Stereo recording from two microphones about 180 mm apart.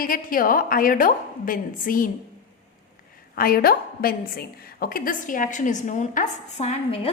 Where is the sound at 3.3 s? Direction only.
55° left (ahead or behind); by 7.0 s 40° left (ahead or behind).